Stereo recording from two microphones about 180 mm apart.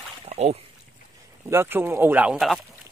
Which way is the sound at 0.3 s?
35° right (ahead or behind).